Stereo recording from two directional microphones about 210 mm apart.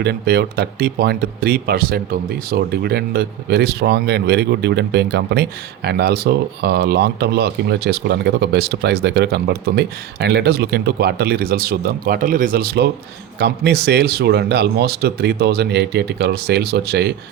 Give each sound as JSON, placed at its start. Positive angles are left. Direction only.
{"t": 0.0, "sound": "speech", "side_deg": -50}